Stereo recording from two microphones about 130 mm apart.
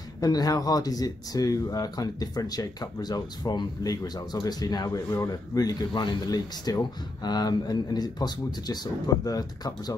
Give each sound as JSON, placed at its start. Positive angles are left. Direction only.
{"t": 0.2, "sound": "speech", "side_deg": 30}